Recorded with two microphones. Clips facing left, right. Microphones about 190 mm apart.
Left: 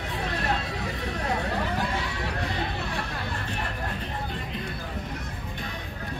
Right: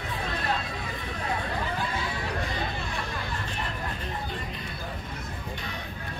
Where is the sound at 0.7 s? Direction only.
75° left (ahead or behind).